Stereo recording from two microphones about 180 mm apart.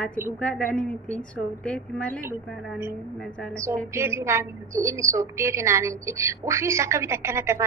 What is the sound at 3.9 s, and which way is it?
A woman's voice, 15° right (ahead or behind).